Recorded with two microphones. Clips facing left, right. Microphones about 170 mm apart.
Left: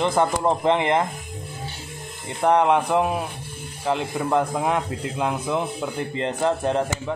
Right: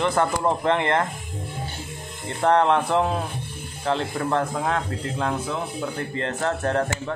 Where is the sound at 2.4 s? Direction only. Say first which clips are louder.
Left 1 dB; 15° left (ahead or behind).